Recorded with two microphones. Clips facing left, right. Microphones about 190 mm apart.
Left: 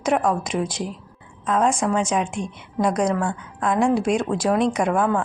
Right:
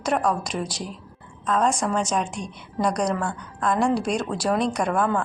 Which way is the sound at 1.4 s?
10° left (ahead or behind).